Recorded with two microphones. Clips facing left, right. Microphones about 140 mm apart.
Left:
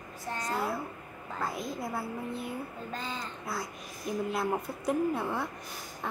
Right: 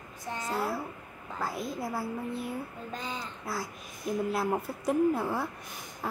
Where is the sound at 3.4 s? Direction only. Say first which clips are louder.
Right 1 dB; centre (ahead or behind).